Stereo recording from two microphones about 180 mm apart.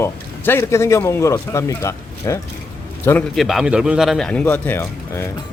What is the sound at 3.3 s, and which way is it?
Speech, centre (ahead or behind).